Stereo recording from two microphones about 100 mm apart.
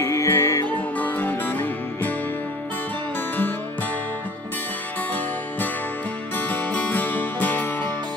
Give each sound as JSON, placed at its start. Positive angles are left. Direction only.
{"t": 0.0, "sound": "music", "side_deg": 30}
{"t": 6.3, "sound": "music", "side_deg": 15}